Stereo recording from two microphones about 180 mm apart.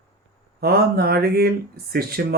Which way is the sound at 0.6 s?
60° right (ahead or behind).